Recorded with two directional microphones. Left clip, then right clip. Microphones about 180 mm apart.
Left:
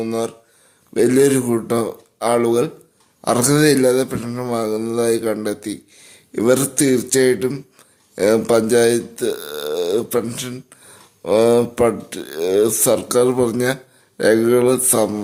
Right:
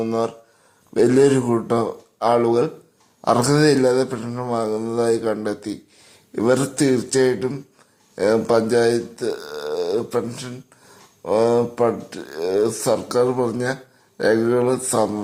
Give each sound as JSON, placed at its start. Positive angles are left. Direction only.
{"t": 0.0, "sound": "speech", "side_deg": 15}